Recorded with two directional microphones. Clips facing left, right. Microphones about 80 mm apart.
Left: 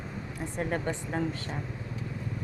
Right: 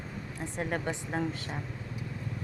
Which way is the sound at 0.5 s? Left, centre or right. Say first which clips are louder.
Left 2 dB; centre.